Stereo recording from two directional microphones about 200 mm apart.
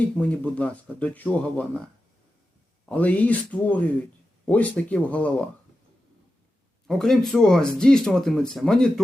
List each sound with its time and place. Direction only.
0.2 s speech: 5° left (ahead or behind)
2.9 s speech: 5° left (ahead or behind)
6.8 s speech: centre (ahead or behind)